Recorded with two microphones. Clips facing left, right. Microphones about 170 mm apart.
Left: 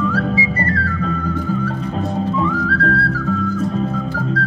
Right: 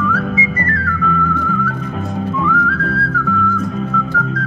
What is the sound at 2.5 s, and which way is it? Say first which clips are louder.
Whistling: even; 35° left (ahead or behind).